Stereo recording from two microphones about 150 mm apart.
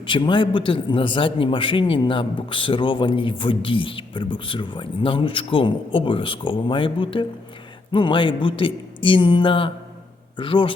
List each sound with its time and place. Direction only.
0.1 s a man's voice: 30° left (ahead or behind)